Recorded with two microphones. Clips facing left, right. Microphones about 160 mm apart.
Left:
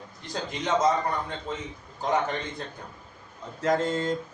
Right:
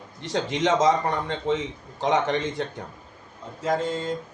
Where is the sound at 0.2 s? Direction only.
80° right.